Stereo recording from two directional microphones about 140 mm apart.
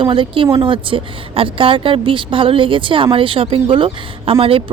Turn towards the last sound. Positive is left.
turn(degrees=-40)  # may be behind; listen again after turning